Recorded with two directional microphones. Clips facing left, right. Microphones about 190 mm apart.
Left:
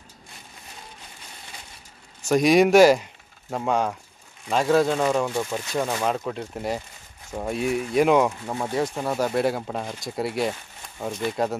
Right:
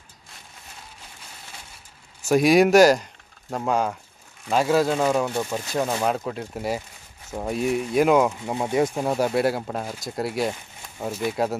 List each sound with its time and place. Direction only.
2.2 s speech: 5° right (ahead or behind)
8.4 s speech: 15° right (ahead or behind)